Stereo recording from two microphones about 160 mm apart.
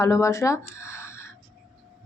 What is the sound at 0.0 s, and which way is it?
Speech, 20° left (ahead or behind).